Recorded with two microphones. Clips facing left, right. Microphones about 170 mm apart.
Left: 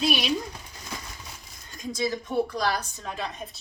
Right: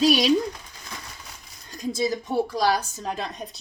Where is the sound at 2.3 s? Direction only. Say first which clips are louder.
Right 4 dB; 35° right (ahead or behind).